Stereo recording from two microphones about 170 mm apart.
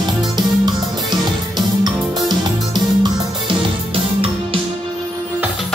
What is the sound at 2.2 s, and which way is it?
Music, 25° right (ahead or behind).